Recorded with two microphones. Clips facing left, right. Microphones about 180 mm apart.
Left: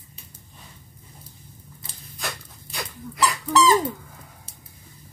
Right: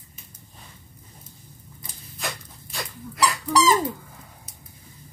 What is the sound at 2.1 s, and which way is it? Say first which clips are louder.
Dog: right 1 dB; centre (ahead or behind).